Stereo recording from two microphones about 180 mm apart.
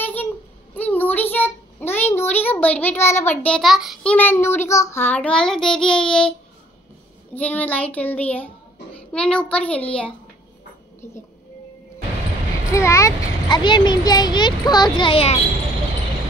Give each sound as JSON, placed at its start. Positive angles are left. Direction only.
{"t": 0.0, "sound": "a sound", "side_deg": 10}
{"t": 0.7, "sound": "a child's voice", "side_deg": 10}
{"t": 7.3, "sound": "a child's voice", "side_deg": 10}
{"t": 12.7, "sound": "a child's voice", "side_deg": 15}